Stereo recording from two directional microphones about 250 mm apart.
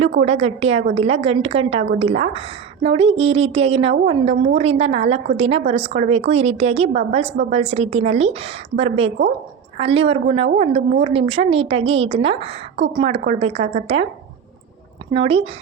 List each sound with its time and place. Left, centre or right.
0.2 s a woman's voice: right
15.1 s a woman's voice: right